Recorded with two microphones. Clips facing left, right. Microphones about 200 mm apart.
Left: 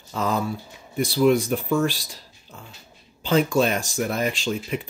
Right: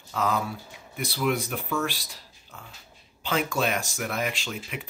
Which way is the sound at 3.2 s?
30° left (ahead or behind).